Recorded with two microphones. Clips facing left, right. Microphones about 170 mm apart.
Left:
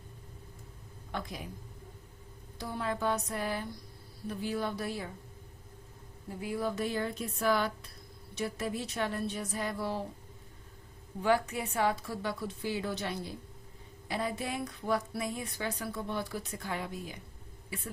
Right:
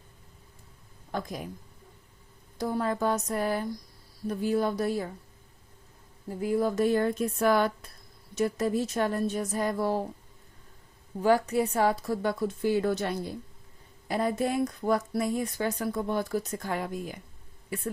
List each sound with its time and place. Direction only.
1.1 s a woman's voice: 45° right (ahead or behind)
2.6 s a woman's voice: 45° right (ahead or behind)
6.4 s a woman's voice: 40° right (ahead or behind)
11.2 s a woman's voice: 40° right (ahead or behind)